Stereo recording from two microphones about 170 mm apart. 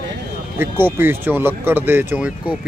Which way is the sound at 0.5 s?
15° right (ahead or behind).